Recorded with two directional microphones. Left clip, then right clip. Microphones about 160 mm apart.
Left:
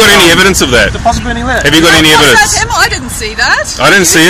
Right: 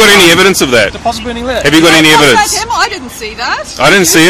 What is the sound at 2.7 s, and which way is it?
Speech, 40° left (ahead or behind).